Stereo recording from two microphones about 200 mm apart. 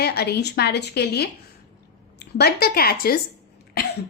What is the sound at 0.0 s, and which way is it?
A woman's voice, 50° left (ahead or behind).